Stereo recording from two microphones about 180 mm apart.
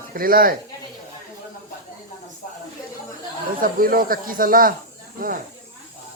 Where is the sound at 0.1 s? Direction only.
55° right (ahead or behind).